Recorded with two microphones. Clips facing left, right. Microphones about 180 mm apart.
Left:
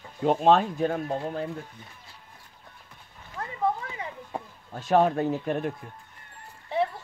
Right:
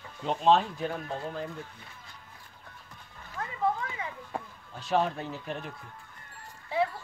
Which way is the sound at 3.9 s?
20° left (ahead or behind).